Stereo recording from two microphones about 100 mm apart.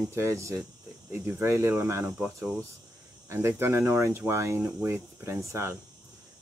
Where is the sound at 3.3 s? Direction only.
25° right (ahead or behind).